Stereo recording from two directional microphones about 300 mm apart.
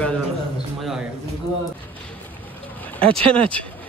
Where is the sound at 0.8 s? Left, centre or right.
Centre.